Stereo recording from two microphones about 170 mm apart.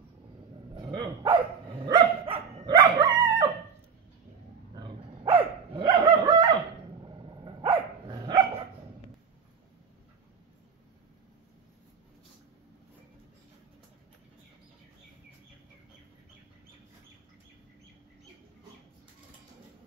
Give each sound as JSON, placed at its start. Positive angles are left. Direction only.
{"t": 0.7, "sound": "dog", "side_deg": -25}
{"t": 4.7, "sound": "dog", "side_deg": -35}
{"t": 6.2, "sound": "chicken", "side_deg": -25}
{"t": 7.1, "sound": "dog", "side_deg": -30}